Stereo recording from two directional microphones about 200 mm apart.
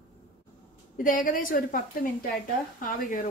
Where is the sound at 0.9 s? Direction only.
40° left (ahead or behind).